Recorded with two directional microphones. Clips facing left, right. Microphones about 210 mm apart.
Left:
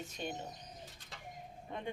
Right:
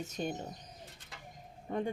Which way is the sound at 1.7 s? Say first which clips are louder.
Right 10 dB; 40° right (ahead or behind).